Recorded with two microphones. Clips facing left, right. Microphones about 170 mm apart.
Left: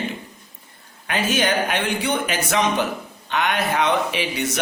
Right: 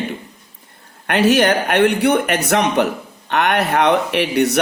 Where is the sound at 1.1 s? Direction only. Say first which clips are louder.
Right 7 dB; 65° right (ahead or behind).